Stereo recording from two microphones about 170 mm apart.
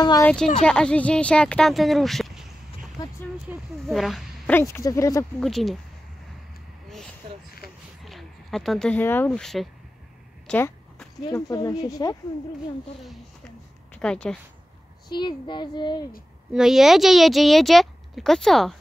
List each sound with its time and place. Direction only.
0.2 s speech: 5° left (ahead or behind)
3.0 s a sound: 20° left (ahead or behind)
3.5 s speech: 10° right (ahead or behind)
4.5 s speech: 15° left (ahead or behind)
5.4 s speech: centre (ahead or behind)
8.0 s speech: centre (ahead or behind)
10.4 s a sound: 5° left (ahead or behind)
11.2 s speech: 20° left (ahead or behind)
13.9 s speech: 5° left (ahead or behind)
15.0 s speech: 25° left (ahead or behind)
16.5 s speech: centre (ahead or behind)